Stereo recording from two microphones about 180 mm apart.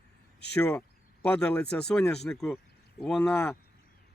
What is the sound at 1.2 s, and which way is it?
Speech, 5° left (ahead or behind).